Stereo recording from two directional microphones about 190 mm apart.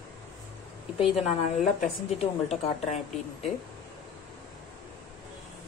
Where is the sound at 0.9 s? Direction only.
30° left (ahead or behind).